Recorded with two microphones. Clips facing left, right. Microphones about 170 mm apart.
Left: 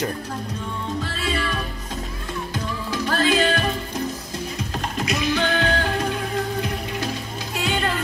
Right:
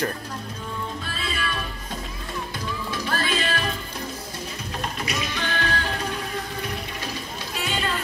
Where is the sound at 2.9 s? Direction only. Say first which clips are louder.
Left 7 dB; 85° left.